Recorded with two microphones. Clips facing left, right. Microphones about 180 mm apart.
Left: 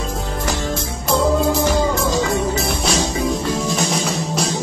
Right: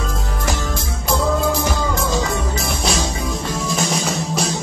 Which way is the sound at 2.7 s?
Centre (ahead or behind).